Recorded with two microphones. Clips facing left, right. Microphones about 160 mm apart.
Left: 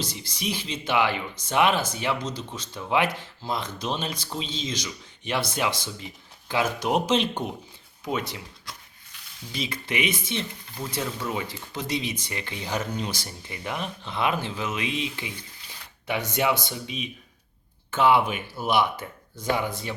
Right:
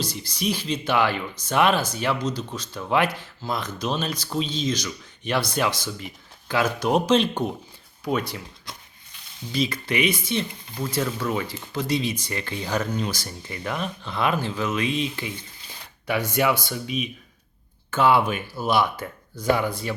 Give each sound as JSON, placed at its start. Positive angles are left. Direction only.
{"t": 0.0, "sound": "speech", "side_deg": 20}
{"t": 9.1, "sound": "sizzle", "side_deg": -25}
{"t": 9.5, "sound": "speech", "side_deg": 20}
{"t": 15.3, "sound": "a sound", "side_deg": -25}
{"t": 16.0, "sound": "speech", "side_deg": 20}